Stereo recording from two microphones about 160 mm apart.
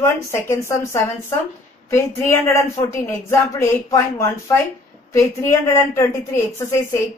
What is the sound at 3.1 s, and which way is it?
A woman's voice, 15° left (ahead or behind).